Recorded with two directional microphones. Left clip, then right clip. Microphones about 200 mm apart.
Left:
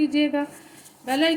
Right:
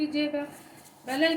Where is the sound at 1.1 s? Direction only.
40° left (ahead or behind).